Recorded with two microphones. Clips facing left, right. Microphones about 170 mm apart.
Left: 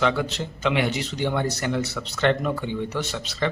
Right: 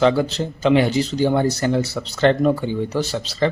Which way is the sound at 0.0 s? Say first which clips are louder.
Right 6 dB; 35° right (ahead or behind).